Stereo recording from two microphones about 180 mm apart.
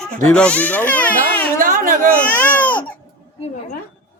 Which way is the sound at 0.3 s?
5° left (ahead or behind).